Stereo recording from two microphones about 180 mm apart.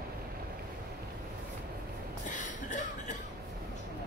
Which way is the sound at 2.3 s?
45° left (ahead or behind).